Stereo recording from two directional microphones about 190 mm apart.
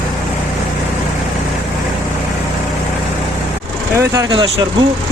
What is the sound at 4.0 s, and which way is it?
Speech, 15° right (ahead or behind).